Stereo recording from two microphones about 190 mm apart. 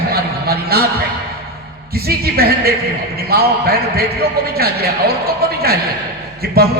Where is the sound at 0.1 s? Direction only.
55° right (ahead or behind).